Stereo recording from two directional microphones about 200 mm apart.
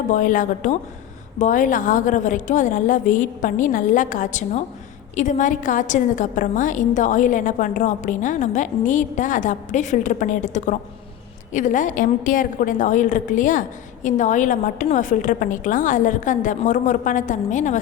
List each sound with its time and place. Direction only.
0.1 s a woman's voice: 40° left (ahead or behind)